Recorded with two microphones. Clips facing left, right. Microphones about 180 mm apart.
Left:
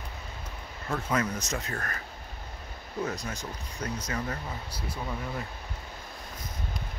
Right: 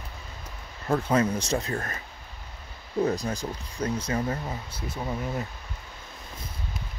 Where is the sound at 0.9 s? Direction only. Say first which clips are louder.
Right 6 dB; 30° right (ahead or behind).